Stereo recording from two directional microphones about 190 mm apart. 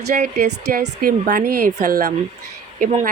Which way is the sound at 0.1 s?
45° right (ahead or behind).